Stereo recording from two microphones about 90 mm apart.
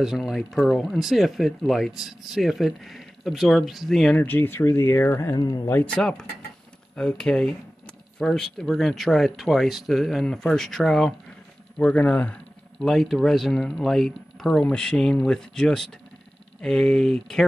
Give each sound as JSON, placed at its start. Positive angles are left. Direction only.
{"t": 0.2, "sound": "speech", "side_deg": 5}
{"t": 4.1, "sound": "speech", "side_deg": 20}
{"t": 5.3, "sound": "speech", "side_deg": 45}
{"t": 5.9, "sound": "speech", "side_deg": 10}
{"t": 11.8, "sound": "speech", "side_deg": 15}
{"t": 12.8, "sound": "speech", "side_deg": 0}